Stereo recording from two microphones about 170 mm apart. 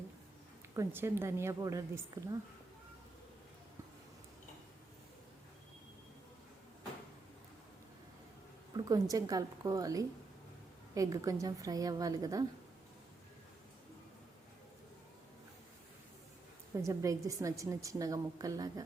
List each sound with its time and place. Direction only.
0.8 s a woman's voice: 15° right (ahead or behind)
8.7 s a woman's voice: 20° right (ahead or behind)
16.7 s a woman's voice: 20° right (ahead or behind)